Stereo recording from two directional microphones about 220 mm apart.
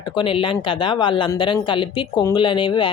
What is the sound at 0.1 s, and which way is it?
Speech, 20° left (ahead or behind).